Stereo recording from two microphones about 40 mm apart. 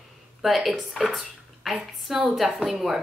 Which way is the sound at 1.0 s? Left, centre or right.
Centre.